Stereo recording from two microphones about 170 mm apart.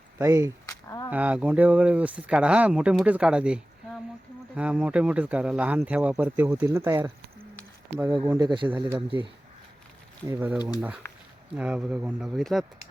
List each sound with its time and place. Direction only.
0.2 s speech: 15° right (ahead or behind)
0.7 s a sound: 20° left (ahead or behind)
1.1 s speech: 10° right (ahead or behind)
8.3 s speech: 25° right (ahead or behind)
10.2 s speech: 10° right (ahead or behind)